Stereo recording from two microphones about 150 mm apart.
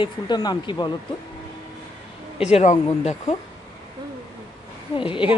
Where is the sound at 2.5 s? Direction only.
50° left (ahead or behind).